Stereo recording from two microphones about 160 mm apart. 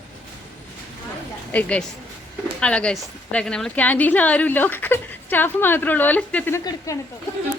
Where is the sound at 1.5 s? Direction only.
10° left (ahead or behind).